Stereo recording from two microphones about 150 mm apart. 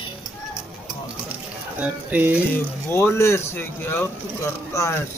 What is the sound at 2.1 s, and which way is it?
Speech, 10° right (ahead or behind).